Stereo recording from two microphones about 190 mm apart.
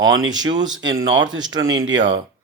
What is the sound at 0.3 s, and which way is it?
Speech, 20° right (ahead or behind).